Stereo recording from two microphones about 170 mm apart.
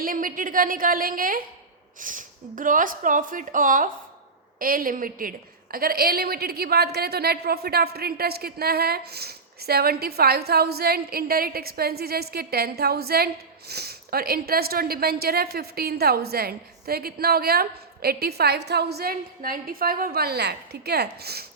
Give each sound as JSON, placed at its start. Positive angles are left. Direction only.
{"t": 0.0, "sound": "a woman's voice", "side_deg": -55}